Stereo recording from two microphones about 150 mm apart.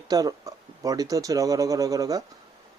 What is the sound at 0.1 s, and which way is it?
Speech, 25° right (ahead or behind).